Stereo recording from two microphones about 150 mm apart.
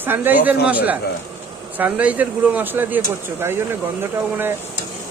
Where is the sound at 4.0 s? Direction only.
15° right (ahead or behind).